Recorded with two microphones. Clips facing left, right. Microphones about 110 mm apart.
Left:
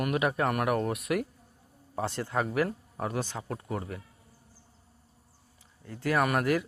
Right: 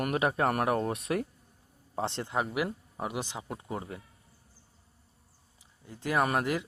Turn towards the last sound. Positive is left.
turn(degrees=-20)  # may be behind; listen again after turning